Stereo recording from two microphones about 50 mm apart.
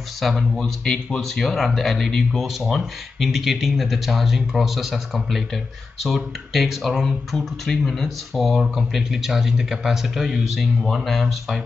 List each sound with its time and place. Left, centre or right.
0.2 s speech: centre
8.9 s speech: centre